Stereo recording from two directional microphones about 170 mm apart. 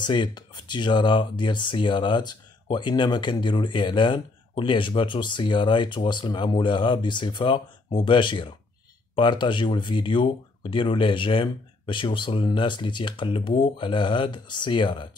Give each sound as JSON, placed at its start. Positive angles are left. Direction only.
{"t": 0.0, "sound": "speech", "side_deg": 25}